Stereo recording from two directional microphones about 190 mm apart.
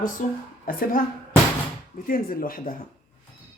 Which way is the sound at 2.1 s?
50° left (ahead or behind).